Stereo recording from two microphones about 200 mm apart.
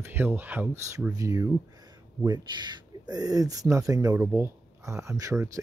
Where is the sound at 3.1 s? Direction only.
20° right (ahead or behind).